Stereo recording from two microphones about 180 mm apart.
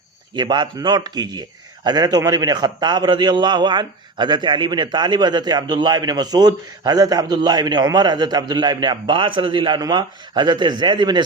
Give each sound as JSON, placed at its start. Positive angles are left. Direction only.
{"t": 0.3, "sound": "a man's voice", "side_deg": -25}